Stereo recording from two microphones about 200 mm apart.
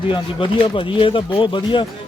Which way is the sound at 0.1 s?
25° left (ahead or behind).